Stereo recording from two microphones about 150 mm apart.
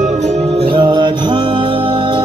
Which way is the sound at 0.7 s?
30° right (ahead or behind).